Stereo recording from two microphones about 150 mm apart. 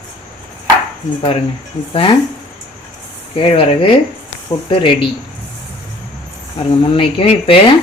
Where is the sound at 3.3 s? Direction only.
35° left (ahead or behind).